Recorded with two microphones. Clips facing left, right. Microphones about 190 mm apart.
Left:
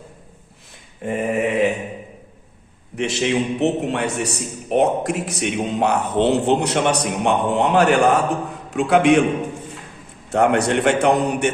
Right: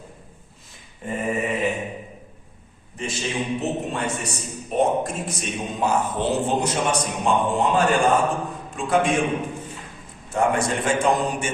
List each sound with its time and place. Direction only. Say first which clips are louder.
1.0 s mantra: left 5 dB; 65° left (ahead or behind)
2.9 s a man's voice: left 8 dB; 70° left (ahead or behind)
10.2 s a man's voice: left 5 dB; 65° left (ahead or behind)